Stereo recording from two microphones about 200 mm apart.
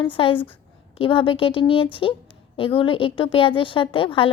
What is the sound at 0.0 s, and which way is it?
Speech, 25° left (ahead or behind).